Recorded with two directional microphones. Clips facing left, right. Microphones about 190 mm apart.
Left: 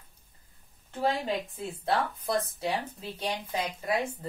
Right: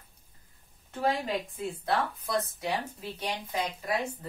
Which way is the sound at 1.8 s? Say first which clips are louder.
Left 2 dB; 30° left (ahead or behind).